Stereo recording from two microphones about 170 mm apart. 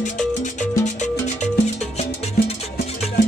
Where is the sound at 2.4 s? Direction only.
70° left (ahead or behind).